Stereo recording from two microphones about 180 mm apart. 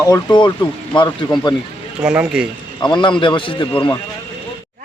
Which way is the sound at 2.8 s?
25° left (ahead or behind).